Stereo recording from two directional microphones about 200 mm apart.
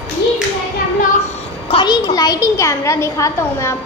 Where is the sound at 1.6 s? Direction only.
25° left (ahead or behind).